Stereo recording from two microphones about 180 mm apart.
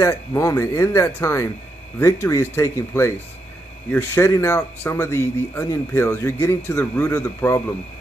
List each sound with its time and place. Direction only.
0.0 s speech: 15° left (ahead or behind)